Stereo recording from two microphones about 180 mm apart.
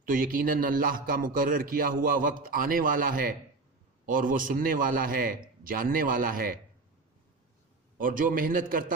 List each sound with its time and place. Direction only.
0.0 s a man's voice: 50° right (ahead or behind)
7.9 s a man's voice: 50° right (ahead or behind)